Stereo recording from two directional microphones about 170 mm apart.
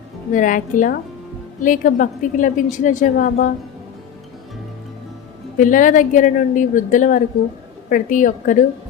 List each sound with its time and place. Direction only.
0.3 s a woman's voice: 50° left (ahead or behind)
5.5 s a woman's voice: 50° left (ahead or behind)